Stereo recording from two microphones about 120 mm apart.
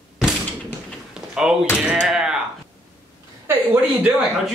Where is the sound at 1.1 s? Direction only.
5° right (ahead or behind).